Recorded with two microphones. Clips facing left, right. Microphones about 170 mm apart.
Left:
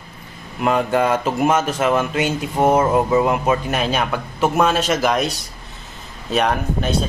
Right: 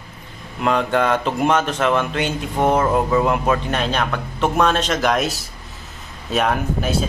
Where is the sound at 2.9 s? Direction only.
5° left (ahead or behind).